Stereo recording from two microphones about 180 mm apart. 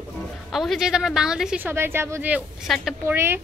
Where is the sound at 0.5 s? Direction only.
Centre (ahead or behind).